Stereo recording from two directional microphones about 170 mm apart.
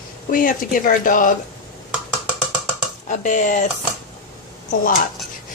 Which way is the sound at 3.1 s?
45° left (ahead or behind).